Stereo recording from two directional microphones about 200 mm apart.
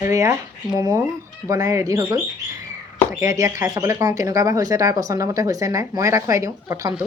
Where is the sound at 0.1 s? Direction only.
15° right (ahead or behind).